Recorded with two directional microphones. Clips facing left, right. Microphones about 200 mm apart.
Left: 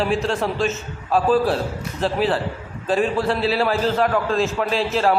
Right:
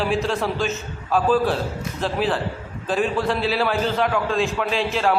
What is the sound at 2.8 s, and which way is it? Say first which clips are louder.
A man's voice: left 2 dB; centre (ahead or behind).